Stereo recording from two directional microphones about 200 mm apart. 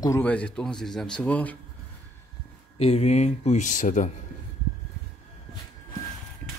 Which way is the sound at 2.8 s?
30° left (ahead or behind).